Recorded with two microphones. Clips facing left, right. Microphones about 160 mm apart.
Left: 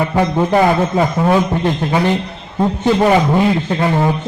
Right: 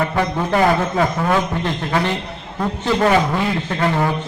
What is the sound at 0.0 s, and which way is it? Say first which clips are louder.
A man's voice: left 4 dB; 25° left (ahead or behind).